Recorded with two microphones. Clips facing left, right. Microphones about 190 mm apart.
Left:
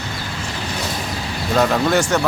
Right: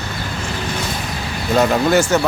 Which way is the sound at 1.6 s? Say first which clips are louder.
Right 2 dB; 5° right (ahead or behind).